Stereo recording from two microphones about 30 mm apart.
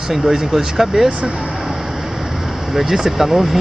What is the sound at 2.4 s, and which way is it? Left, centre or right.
Speech, centre.